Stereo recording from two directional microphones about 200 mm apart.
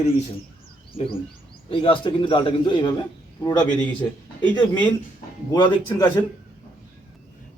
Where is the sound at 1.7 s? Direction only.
25° left (ahead or behind).